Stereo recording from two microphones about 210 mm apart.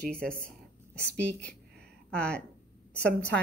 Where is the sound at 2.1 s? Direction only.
5° left (ahead or behind).